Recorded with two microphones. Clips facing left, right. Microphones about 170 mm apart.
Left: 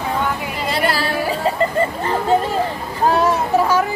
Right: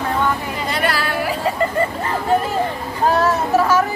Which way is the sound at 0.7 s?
30° left (ahead or behind).